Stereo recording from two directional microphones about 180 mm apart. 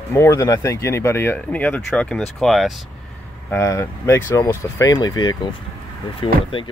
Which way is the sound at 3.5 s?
15° left (ahead or behind).